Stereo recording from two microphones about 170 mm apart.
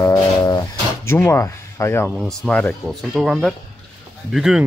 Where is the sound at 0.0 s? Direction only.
20° left (ahead or behind).